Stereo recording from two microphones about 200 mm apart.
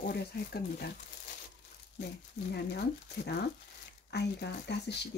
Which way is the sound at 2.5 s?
55° left (ahead or behind).